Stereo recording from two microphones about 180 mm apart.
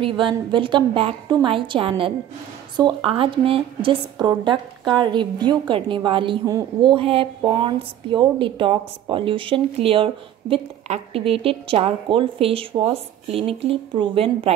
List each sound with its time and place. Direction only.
0.0 s a woman's voice: 25° right (ahead or behind)